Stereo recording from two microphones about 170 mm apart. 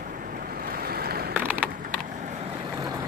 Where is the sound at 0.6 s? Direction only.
60° right (ahead or behind).